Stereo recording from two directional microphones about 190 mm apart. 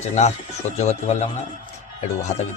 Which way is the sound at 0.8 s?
35° left (ahead or behind).